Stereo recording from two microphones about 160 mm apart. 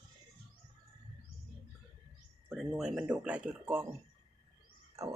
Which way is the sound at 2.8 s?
5° right (ahead or behind).